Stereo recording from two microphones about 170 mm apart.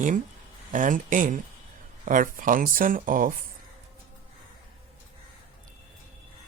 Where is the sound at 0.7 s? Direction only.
50° right (ahead or behind).